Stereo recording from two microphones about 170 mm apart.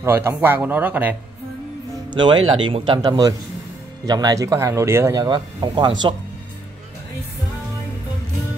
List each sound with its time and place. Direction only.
0.0 s speech: 15° right (ahead or behind)
2.0 s speech: 30° right (ahead or behind)